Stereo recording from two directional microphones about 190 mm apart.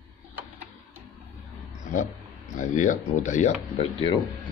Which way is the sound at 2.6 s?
40° left (ahead or behind).